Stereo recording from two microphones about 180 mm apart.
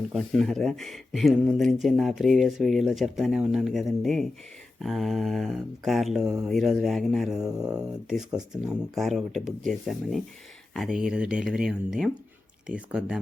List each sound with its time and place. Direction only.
0.1 s speech: centre (ahead or behind)
7.6 s speech: 20° right (ahead or behind)
8.1 s speech: 5° right (ahead or behind)